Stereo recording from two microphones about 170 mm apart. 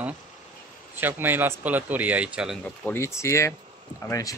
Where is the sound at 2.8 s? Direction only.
15° left (ahead or behind).